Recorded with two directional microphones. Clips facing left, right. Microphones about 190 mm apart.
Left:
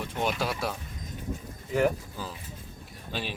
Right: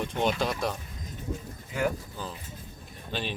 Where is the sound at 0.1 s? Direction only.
5° left (ahead or behind).